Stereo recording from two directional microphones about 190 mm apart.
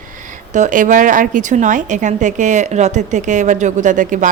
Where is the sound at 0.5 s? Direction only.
40° right (ahead or behind).